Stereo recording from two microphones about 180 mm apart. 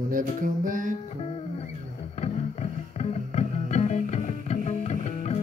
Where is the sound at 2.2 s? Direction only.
35° left (ahead or behind).